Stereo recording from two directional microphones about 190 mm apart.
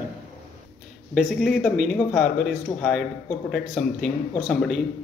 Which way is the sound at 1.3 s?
Centre (ahead or behind).